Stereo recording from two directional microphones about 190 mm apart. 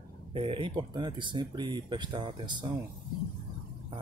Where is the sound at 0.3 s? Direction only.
30° right (ahead or behind).